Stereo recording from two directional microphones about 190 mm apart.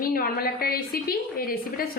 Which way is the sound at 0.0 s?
50° left (ahead or behind).